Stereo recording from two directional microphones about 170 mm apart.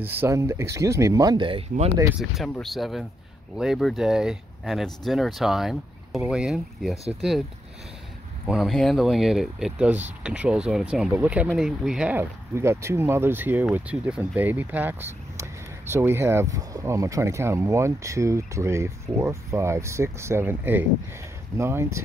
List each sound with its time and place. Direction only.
0.0 s speech: 10° right (ahead or behind); by 1.9 s 30° right (ahead or behind)
2.1 s speech: centre (ahead or behind)
8.5 s speech: centre (ahead or behind)